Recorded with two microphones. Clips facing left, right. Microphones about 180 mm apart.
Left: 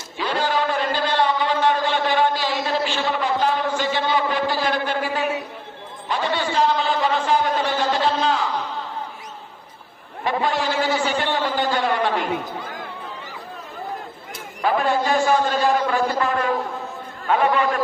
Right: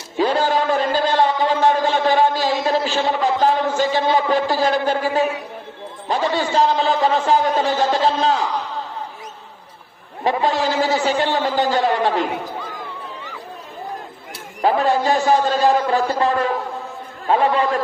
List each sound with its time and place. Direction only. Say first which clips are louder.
0.2 s a sound: right 5 dB; 45° right (ahead or behind)
6.1 s a man's voice: right 4 dB; 35° right (ahead or behind)
10.2 s speech: right 3 dB; 35° right (ahead or behind)
14.6 s speech: right 3 dB; 30° right (ahead or behind)